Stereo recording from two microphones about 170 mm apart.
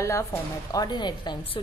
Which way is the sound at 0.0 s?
15° left (ahead or behind).